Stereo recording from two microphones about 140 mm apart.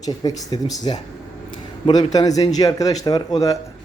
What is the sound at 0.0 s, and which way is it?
A man's voice, 25° left (ahead or behind).